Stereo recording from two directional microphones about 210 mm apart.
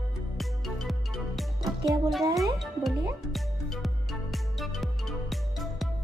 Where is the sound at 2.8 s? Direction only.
Centre (ahead or behind).